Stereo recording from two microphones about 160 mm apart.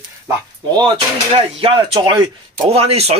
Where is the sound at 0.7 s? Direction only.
30° right (ahead or behind).